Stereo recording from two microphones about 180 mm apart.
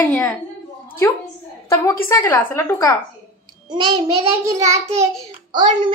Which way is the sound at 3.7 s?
25° right (ahead or behind).